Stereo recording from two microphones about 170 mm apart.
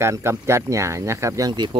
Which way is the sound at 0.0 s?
15° right (ahead or behind).